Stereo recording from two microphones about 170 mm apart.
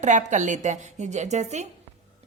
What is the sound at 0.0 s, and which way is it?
A woman's voice, 45° right (ahead or behind).